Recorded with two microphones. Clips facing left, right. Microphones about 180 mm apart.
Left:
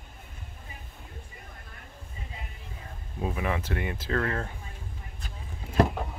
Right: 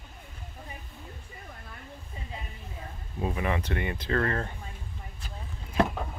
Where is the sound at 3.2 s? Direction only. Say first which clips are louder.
Right 1 dB; centre (ahead or behind).